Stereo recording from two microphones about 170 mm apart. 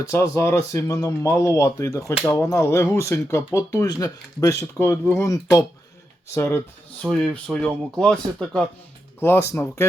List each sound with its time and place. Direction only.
0.0 s speech: 15° left (ahead or behind)
7.0 s speech: 5° left (ahead or behind)